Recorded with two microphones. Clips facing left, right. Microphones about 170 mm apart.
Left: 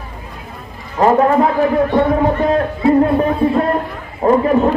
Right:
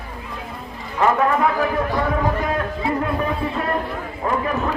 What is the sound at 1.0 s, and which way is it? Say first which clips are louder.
Speech: left 6 dB; 35° left (ahead or behind).